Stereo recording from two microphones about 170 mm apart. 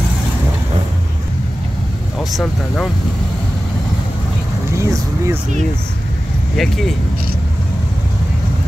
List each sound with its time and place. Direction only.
2.1 s speech: centre (ahead or behind)
4.7 s speech: 20° right (ahead or behind)
6.5 s speech: centre (ahead or behind)